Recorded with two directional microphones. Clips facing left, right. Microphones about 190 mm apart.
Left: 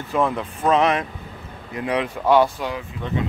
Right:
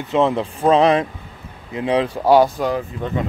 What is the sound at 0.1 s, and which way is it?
Speech, 25° right (ahead or behind).